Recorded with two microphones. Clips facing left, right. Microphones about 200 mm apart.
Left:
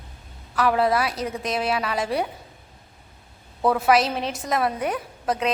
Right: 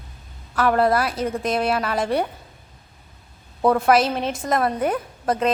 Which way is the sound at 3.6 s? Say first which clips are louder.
Right 2 dB; centre (ahead or behind).